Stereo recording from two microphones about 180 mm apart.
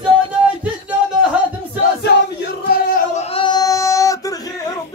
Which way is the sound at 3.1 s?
30° left (ahead or behind).